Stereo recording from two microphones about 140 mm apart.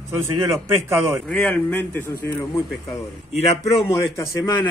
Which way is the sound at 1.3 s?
10° left (ahead or behind).